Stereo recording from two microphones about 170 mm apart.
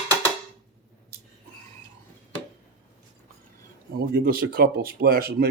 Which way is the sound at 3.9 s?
65° right (ahead or behind).